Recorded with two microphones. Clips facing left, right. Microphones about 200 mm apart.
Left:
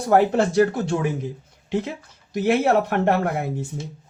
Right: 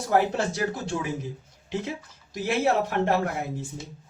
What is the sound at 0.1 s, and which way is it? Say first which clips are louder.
Speech: left 6 dB; 60° left (ahead or behind).